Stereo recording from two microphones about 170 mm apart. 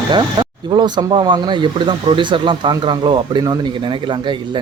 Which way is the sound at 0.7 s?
25° right (ahead or behind).